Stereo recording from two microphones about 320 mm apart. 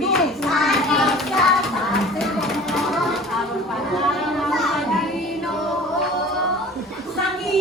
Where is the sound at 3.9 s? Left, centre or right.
Centre.